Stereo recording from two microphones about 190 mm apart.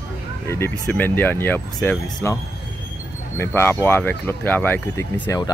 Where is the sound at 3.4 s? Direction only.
10° left (ahead or behind).